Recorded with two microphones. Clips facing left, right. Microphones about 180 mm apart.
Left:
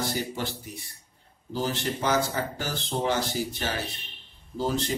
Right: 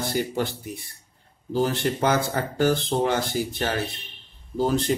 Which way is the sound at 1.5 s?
55° right (ahead or behind).